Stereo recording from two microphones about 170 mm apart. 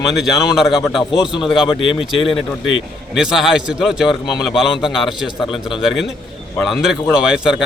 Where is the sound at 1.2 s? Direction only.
25° left (ahead or behind).